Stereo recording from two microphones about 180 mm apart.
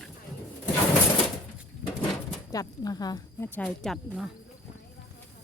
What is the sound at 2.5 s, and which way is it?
Speech, 20° left (ahead or behind).